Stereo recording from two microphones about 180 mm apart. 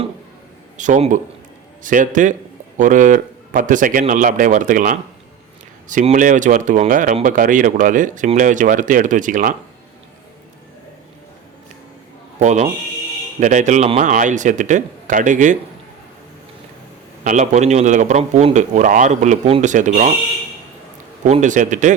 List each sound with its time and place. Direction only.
0.8 s a man's voice: 45° right (ahead or behind)
12.4 s speech: 40° right (ahead or behind)
17.2 s speech: 40° right (ahead or behind)
21.2 s speech: 40° right (ahead or behind)